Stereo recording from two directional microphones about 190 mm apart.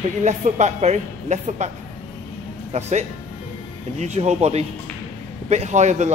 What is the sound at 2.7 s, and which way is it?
Speech, 35° right (ahead or behind).